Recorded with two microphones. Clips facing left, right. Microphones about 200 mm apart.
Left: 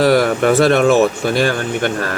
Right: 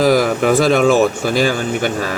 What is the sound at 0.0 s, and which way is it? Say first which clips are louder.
Speech: left 1 dB; centre (ahead or behind).